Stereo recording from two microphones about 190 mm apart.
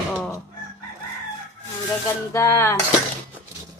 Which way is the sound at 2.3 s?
15° left (ahead or behind).